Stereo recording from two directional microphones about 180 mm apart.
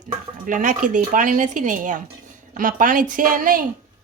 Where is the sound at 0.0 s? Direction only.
45° right (ahead or behind).